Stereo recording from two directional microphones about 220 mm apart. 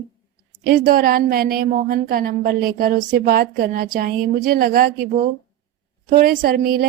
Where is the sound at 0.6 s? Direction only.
40° right (ahead or behind).